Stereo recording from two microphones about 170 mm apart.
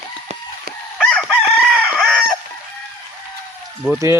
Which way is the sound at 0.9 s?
5° left (ahead or behind).